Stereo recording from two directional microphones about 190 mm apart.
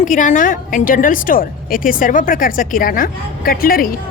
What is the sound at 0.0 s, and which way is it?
A woman's voice, 40° left (ahead or behind).